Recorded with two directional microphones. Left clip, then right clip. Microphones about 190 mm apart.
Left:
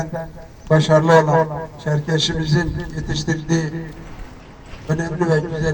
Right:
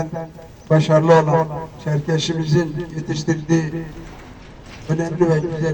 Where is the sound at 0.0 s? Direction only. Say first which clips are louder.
Even; 15° left (ahead or behind).